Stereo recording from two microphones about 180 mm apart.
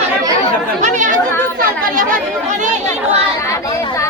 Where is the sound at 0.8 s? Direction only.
45° right (ahead or behind).